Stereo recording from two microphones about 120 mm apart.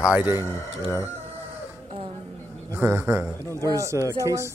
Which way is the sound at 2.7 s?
20° right (ahead or behind).